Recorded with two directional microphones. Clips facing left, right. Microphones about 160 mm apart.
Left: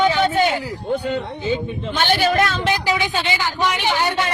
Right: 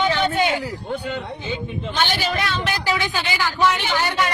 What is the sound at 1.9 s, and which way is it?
Speech, 55° left (ahead or behind).